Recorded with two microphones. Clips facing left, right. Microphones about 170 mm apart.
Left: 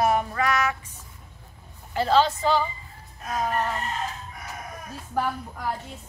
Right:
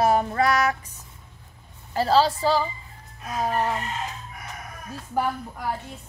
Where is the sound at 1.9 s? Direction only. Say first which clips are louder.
Right 1 dB; 35° right (ahead or behind).